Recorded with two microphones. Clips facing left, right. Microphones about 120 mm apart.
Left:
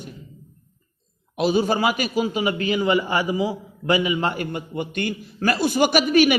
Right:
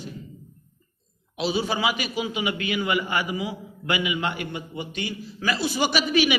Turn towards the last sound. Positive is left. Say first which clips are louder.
# left 5 dB
turn(degrees=50)  # may be behind; listen again after turning